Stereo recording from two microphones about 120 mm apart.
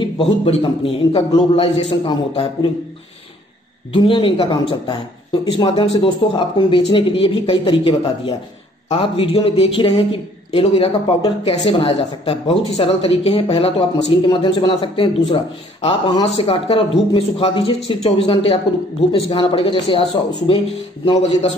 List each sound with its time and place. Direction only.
0.5 s speech: 50° left (ahead or behind)
3.9 s speech: 45° left (ahead or behind)
21.2 s a man's voice: 55° left (ahead or behind)